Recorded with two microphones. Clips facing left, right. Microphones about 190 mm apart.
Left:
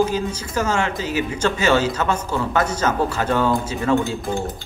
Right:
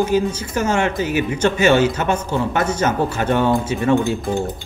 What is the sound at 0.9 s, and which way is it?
Speech, 30° left (ahead or behind).